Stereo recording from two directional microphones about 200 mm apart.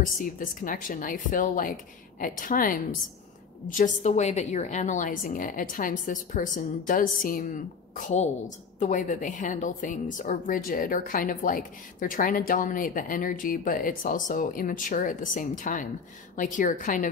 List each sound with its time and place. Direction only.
0.0 s a woman's voice: 40° left (ahead or behind)